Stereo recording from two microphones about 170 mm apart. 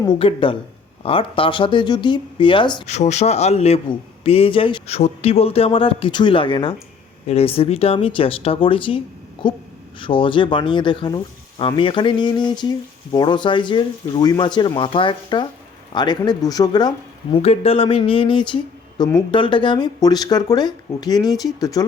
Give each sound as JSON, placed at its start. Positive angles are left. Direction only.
{"t": 0.0, "sound": "a man's voice", "side_deg": 30}
{"t": 2.8, "sound": "a man's voice", "side_deg": 40}
{"t": 17.3, "sound": "speech", "side_deg": 35}